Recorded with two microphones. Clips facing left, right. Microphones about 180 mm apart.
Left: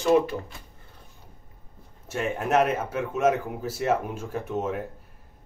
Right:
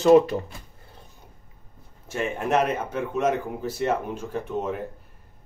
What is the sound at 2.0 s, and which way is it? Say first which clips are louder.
A man's voice: right 1 dB; centre (ahead or behind).